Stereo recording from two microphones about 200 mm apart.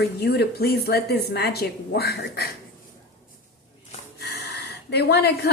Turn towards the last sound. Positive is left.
turn(degrees=55)  # may be behind; listen again after turning